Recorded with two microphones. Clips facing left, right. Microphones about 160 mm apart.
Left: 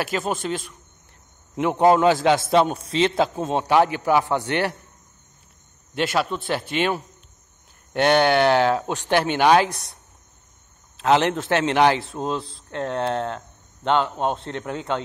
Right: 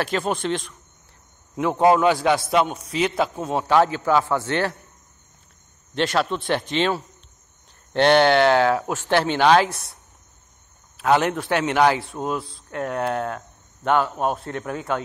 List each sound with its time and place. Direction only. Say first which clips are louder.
0.0 s a man's voice: right 1 dB; centre (ahead or behind)
1.9 s speech: left 1 dB; 25° left (ahead or behind)
5.9 s speech: right 1 dB; 5° left (ahead or behind)
11.1 s speech: left 1 dB; 20° left (ahead or behind)